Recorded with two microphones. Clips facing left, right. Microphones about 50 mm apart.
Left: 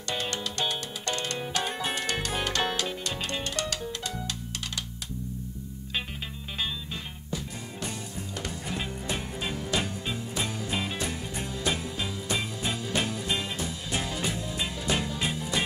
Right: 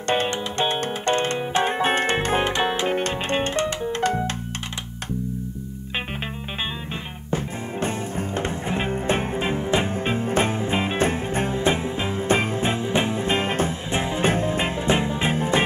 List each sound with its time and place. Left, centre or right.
0.3 s music: right
2.9 s music: right
7.2 s music: right